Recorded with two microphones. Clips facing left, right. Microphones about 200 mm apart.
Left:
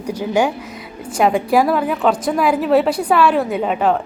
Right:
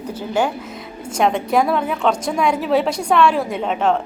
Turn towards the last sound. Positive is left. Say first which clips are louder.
# left 2 dB
turn(degrees=5)  # may be behind; listen again after turning